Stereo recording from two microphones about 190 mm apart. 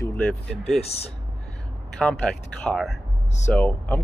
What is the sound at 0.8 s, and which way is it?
Speech, 35° left (ahead or behind).